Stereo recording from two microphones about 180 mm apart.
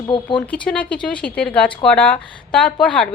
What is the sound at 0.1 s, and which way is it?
Speech, 25° left (ahead or behind).